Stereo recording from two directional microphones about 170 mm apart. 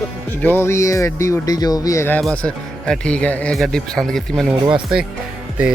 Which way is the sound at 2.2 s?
5° left (ahead or behind).